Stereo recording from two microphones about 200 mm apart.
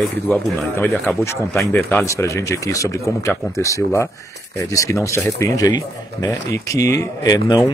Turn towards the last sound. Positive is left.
turn(degrees=20)  # may be behind; listen again after turning